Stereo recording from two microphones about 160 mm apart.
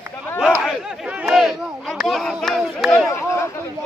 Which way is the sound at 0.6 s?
5° right (ahead or behind).